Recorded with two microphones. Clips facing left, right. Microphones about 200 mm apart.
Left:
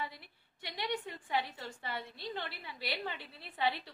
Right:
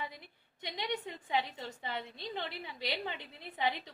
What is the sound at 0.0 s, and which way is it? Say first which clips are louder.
A woman's voice: left 1 dB; 20° right (ahead or behind).